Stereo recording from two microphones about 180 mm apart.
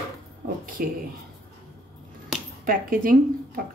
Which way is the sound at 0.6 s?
50° right (ahead or behind).